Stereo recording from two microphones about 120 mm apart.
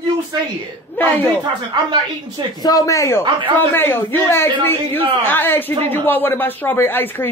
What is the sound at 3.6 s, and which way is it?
A man's voice, 20° left (ahead or behind).